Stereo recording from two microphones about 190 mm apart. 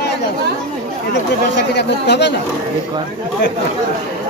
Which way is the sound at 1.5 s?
65° left (ahead or behind).